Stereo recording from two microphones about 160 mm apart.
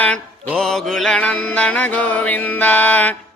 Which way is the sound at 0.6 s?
5° left (ahead or behind).